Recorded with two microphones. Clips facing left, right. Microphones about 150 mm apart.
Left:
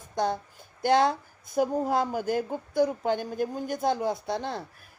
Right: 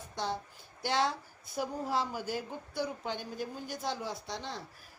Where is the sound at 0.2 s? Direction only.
50° left (ahead or behind).